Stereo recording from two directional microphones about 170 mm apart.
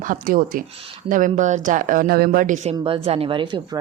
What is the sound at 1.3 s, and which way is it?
Speech, 45° right (ahead or behind).